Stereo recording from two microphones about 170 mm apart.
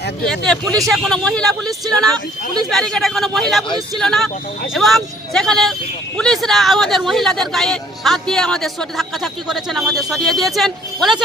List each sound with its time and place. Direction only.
0.2 s speech: 5° left (ahead or behind)